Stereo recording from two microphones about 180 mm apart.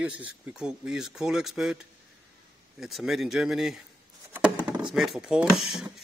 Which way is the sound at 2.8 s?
Centre (ahead or behind).